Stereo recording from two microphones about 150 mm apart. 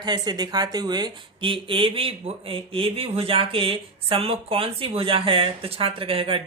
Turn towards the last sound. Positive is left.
turn(degrees=-35)  # may be behind; listen again after turning